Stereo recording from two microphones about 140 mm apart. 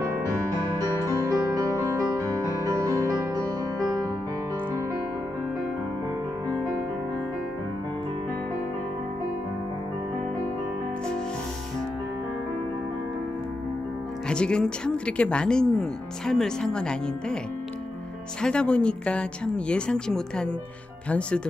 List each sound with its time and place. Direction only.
0.7 s music: 25° right (ahead or behind)
14.3 s speech: 5° left (ahead or behind)
18.4 s speech: 5° left (ahead or behind)